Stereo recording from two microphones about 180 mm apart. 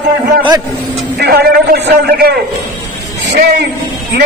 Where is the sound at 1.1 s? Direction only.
60° right (ahead or behind).